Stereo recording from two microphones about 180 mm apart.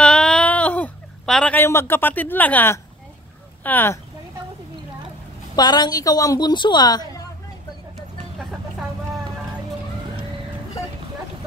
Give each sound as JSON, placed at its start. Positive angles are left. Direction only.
{"t": 0.0, "sound": "a sound", "side_deg": 5}
{"t": 3.6, "sound": "speech", "side_deg": 10}
{"t": 5.6, "sound": "a woman's voice", "side_deg": 20}